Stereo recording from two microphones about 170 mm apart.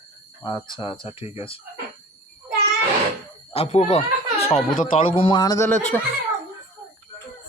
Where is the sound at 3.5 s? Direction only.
35° left (ahead or behind); by 6.1 s 10° left (ahead or behind).